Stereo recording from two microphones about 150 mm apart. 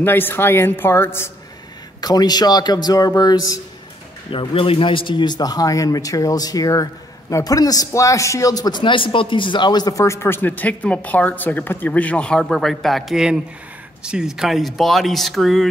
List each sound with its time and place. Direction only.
0.0 s a woman's voice: 15° left (ahead or behind)
2.0 s a man's voice: 25° left (ahead or behind)
4.3 s a man's voice: 35° left (ahead or behind); by 15.6 s centre (ahead or behind)